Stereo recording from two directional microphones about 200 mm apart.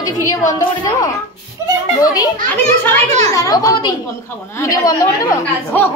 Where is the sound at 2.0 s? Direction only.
20° left (ahead or behind).